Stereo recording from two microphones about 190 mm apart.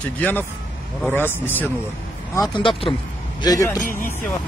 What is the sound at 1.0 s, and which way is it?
Speech, 10° left (ahead or behind).